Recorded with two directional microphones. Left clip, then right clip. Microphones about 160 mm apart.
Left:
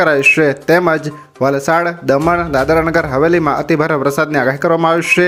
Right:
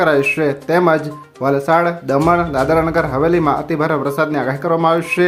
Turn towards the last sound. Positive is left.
turn(degrees=25)  # may be behind; listen again after turning